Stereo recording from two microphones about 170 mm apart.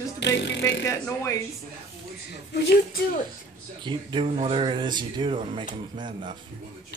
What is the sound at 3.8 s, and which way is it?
Speech, 30° right (ahead or behind).